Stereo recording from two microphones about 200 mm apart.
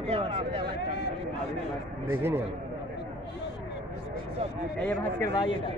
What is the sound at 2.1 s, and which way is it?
Speech, 10° right (ahead or behind).